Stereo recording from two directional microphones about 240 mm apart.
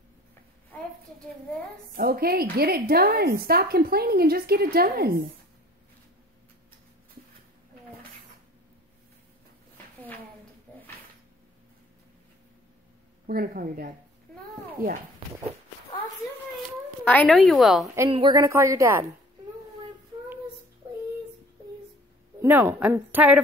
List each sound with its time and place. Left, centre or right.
2.0 s a woman's voice: right
13.3 s a woman's voice: right
17.0 s a woman's voice: centre
18.1 s speech: centre
22.4 s speech: centre